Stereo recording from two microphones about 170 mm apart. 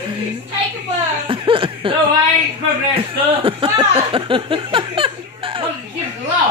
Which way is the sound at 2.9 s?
30° right (ahead or behind).